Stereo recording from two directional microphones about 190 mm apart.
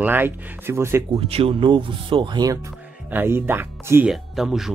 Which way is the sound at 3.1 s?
10° right (ahead or behind).